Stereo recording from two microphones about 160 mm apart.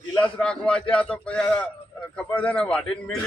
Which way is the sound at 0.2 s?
5° left (ahead or behind).